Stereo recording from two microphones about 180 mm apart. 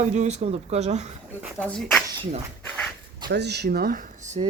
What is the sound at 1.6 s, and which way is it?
Speech, 5° left (ahead or behind).